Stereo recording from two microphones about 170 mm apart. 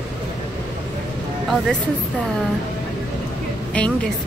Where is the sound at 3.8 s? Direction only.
5° left (ahead or behind).